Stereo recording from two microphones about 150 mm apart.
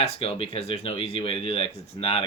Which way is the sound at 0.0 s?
40° left (ahead or behind).